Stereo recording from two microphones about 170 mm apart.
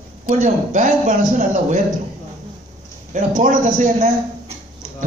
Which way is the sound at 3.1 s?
50° right (ahead or behind).